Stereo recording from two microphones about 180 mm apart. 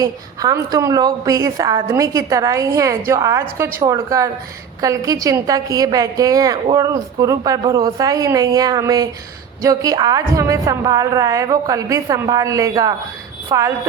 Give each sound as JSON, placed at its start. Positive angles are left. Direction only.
{"t": 0.0, "sound": "a woman's voice", "side_deg": -20}